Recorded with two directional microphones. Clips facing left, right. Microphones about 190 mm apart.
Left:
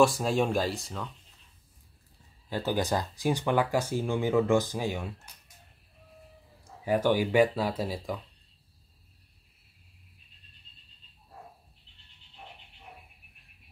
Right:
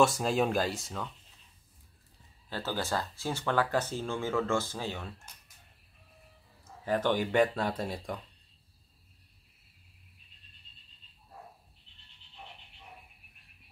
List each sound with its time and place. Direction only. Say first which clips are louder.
0.0 s speech: left 2 dB; centre (ahead or behind)
2.5 s speech: left 5 dB; 15° left (ahead or behind)
6.6 s speech: left 3 dB; 10° left (ahead or behind)